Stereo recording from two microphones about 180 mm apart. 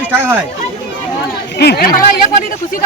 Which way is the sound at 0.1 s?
15° right (ahead or behind).